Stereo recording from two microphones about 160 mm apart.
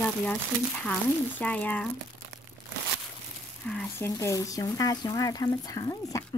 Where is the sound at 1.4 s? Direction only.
10° left (ahead or behind).